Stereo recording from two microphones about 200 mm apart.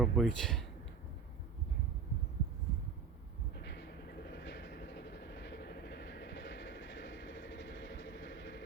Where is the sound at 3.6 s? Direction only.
55° left (ahead or behind).